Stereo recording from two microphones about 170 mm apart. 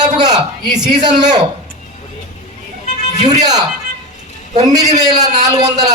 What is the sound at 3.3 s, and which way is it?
Speech, 25° right (ahead or behind).